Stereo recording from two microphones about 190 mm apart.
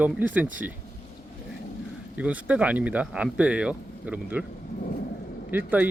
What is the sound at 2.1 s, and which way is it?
Speech, 5° right (ahead or behind).